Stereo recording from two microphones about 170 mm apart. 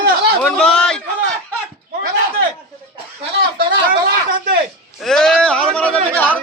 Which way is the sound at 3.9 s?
55° right (ahead or behind).